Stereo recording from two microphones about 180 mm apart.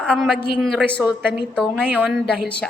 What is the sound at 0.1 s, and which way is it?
Speech, centre (ahead or behind).